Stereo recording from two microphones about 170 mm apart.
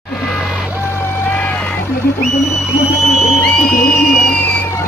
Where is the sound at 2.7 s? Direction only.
5° left (ahead or behind).